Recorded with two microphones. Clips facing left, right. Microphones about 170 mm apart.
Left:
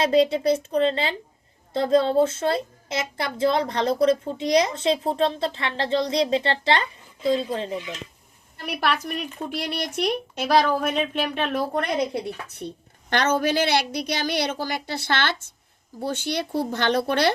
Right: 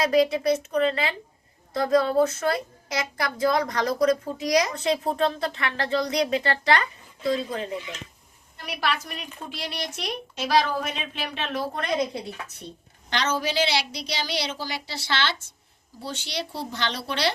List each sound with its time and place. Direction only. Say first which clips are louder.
0.0 s speech: left 2 dB; 30° left (ahead or behind)
8.6 s a woman's voice: left 3 dB; 60° left (ahead or behind)